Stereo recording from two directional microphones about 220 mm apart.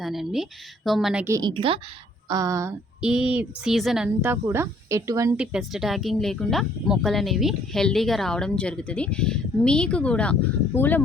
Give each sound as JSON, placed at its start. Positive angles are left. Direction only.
{"t": 0.0, "sound": "speech", "side_deg": 0}
{"t": 5.4, "sound": "speech", "side_deg": 0}